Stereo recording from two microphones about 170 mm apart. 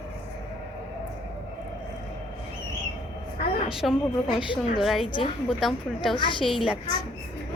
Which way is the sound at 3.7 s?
Centre (ahead or behind).